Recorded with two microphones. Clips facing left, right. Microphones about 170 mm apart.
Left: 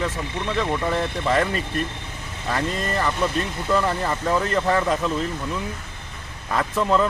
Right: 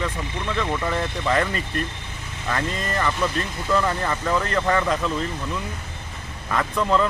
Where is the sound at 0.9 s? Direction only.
Centre (ahead or behind).